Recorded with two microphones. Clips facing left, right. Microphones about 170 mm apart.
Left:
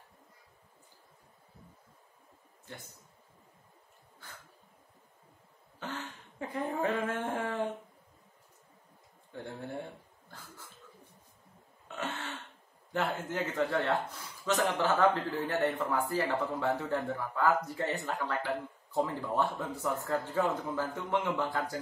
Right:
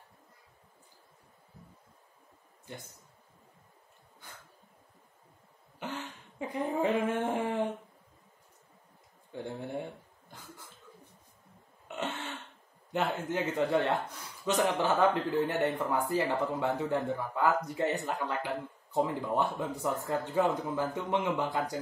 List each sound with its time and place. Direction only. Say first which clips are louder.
5.8 s speech: right 1 dB; 15° right (ahead or behind)
9.3 s a sound: right 3 dB; 15° right (ahead or behind)
12.9 s speech: right 2 dB; 20° right (ahead or behind)